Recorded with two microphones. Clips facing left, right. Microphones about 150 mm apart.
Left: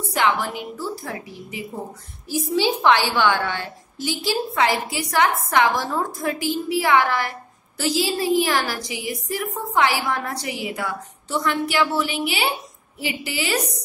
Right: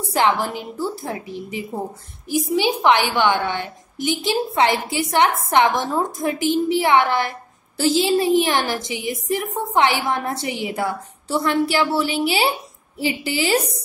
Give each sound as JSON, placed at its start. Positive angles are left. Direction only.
{"t": 0.0, "sound": "a woman's voice", "side_deg": -30}
{"t": 2.2, "sound": "a woman's voice", "side_deg": -15}